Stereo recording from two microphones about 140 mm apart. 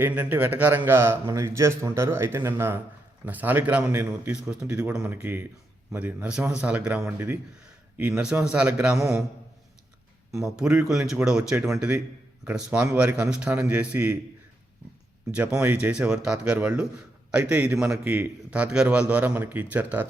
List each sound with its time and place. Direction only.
0.0 s a man's voice: 15° right (ahead or behind)
10.4 s a man's voice: 5° right (ahead or behind)
15.3 s a man's voice: 10° right (ahead or behind)